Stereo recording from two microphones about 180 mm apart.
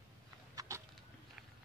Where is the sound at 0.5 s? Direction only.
20° right (ahead or behind).